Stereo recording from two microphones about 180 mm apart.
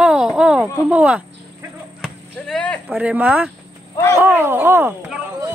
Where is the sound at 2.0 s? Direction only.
5° left (ahead or behind).